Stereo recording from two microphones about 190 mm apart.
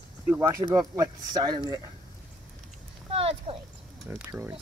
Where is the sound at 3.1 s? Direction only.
30° right (ahead or behind).